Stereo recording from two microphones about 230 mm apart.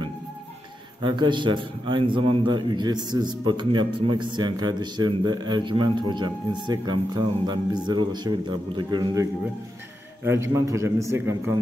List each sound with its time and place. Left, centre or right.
1.0 s a man's voice: centre